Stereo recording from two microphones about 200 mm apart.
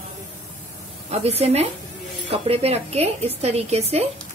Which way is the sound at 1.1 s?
30° right (ahead or behind).